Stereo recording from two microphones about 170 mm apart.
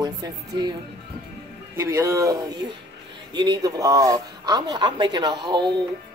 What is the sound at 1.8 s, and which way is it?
Speech, 15° right (ahead or behind).